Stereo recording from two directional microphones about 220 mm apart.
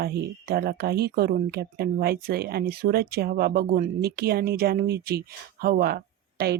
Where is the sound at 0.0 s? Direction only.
45° right (ahead or behind).